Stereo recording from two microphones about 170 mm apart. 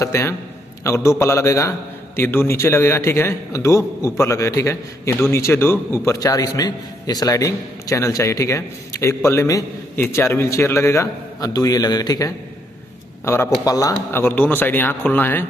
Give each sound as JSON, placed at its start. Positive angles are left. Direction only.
{"t": 0.0, "sound": "a man's voice", "side_deg": 15}